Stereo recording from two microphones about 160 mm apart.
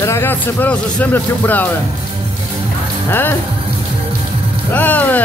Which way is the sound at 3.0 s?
15° left (ahead or behind).